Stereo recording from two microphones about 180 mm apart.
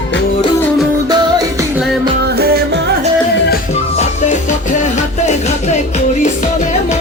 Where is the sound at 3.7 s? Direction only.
35° left (ahead or behind).